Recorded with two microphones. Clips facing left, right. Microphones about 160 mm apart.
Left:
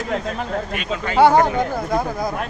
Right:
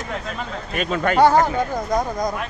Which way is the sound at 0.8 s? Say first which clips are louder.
Right 4 dB; 50° right (ahead or behind).